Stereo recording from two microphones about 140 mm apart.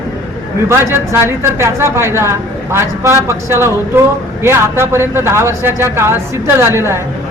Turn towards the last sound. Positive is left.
turn(degrees=-20)  # may be behind; listen again after turning